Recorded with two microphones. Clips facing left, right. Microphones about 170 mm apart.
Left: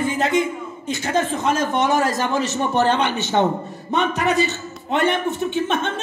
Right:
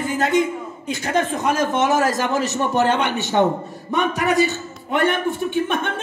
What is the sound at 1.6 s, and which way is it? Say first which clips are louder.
A man's voice: right 2 dB; 5° right (ahead or behind).